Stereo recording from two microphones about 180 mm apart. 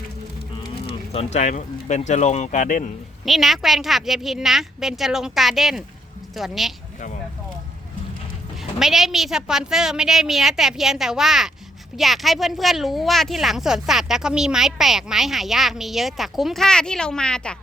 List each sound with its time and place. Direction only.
1.1 s speech: 35° left (ahead or behind)
3.2 s speech: centre (ahead or behind)
8.8 s speech: centre (ahead or behind)